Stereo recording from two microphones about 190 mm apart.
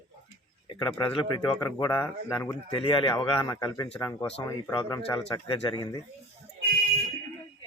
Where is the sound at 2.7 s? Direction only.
30° left (ahead or behind).